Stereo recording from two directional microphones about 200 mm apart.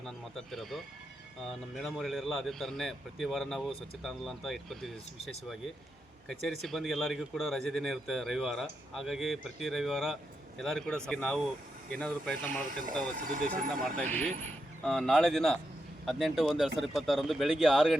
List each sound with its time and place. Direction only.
0.0 s speech: centre (ahead or behind)
13.1 s speech: 40° right (ahead or behind)
13.8 s speech: 10° left (ahead or behind)